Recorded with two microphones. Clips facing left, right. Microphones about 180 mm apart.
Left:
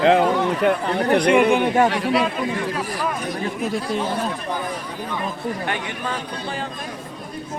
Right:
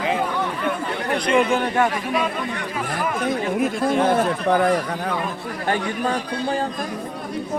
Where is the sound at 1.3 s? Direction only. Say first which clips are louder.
Left 3 dB; 10° left (ahead or behind).